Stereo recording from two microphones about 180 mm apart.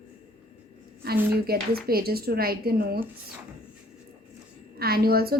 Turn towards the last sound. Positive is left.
turn(degrees=-55)  # may be behind; listen again after turning